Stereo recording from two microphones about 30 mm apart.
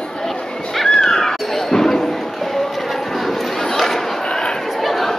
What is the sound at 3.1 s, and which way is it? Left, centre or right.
Chatter, centre.